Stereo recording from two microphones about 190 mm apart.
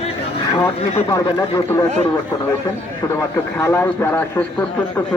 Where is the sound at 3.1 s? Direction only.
15° left (ahead or behind).